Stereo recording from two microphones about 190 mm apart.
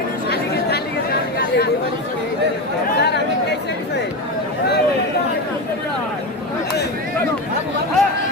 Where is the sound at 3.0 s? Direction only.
60° left (ahead or behind).